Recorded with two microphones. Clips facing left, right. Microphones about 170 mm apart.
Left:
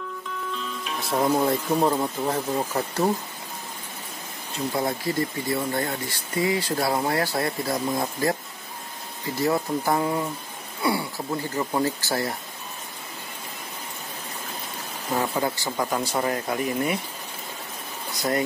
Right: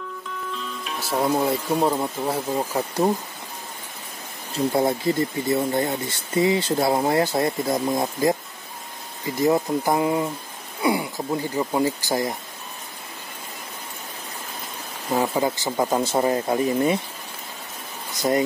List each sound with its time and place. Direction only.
0.5 s speech: centre (ahead or behind)
4.7 s speech: 25° right (ahead or behind)
9.4 s speech: 15° right (ahead or behind)
15.1 s speech: 20° right (ahead or behind)